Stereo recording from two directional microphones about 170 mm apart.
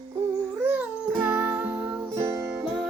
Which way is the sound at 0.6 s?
10° right (ahead or behind).